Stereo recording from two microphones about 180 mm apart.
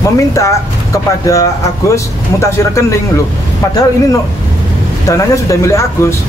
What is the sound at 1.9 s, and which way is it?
Speech, 15° left (ahead or behind).